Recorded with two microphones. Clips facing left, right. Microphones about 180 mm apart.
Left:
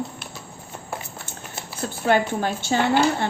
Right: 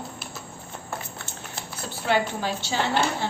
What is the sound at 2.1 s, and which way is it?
Speech, 50° left (ahead or behind).